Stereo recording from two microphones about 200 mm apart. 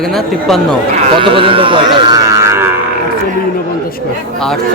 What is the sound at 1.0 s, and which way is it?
Speech, 30° right (ahead or behind).